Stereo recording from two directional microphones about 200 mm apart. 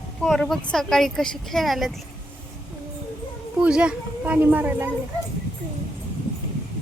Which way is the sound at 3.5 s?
5° right (ahead or behind).